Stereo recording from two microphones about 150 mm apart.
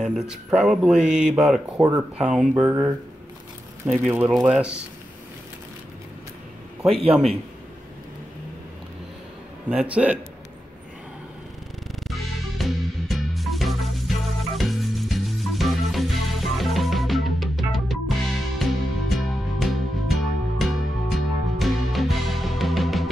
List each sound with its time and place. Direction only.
0.0 s speech: 5° right (ahead or behind)
6.9 s a man's voice: 40° right (ahead or behind)
9.7 s speech: 10° right (ahead or behind)
11.9 s music: centre (ahead or behind)